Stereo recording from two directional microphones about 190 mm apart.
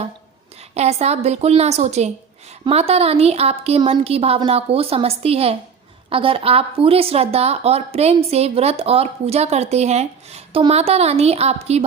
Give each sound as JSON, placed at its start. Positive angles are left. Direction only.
{"t": 0.7, "sound": "a woman's voice", "side_deg": -35}